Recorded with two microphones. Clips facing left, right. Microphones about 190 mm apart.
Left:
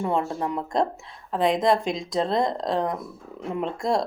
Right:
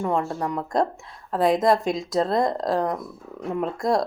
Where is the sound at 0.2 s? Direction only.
20° left (ahead or behind).